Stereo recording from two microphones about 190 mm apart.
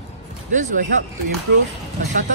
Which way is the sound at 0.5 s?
40° right (ahead or behind).